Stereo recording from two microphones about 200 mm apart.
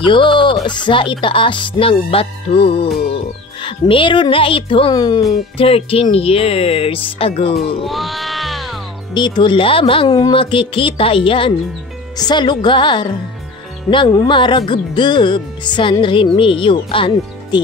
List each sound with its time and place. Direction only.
0.0 s speech: 25° left (ahead or behind)
7.5 s speech: centre (ahead or behind)
9.1 s speech: 20° left (ahead or behind)